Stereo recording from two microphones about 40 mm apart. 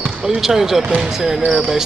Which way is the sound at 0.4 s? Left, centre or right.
Centre.